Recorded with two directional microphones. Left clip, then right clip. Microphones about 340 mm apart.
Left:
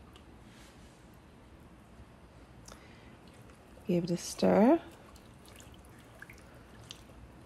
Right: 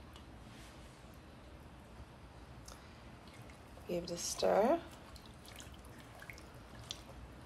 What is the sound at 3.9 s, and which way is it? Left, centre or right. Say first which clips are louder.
Speech: left 6 dB; centre.